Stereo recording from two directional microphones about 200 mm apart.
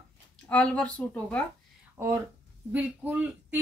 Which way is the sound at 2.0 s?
10° right (ahead or behind).